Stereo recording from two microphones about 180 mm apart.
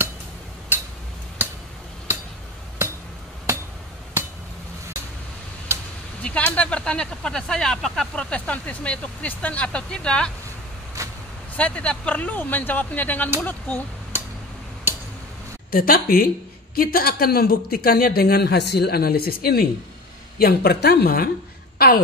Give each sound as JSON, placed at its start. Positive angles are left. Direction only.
{"t": 0.7, "sound": "tick-tock", "side_deg": -10}
{"t": 6.2, "sound": "speech", "side_deg": 10}
{"t": 11.0, "sound": "vehicle", "side_deg": -15}
{"t": 11.5, "sound": "speech", "side_deg": 5}
{"t": 15.7, "sound": "a man's voice", "side_deg": 55}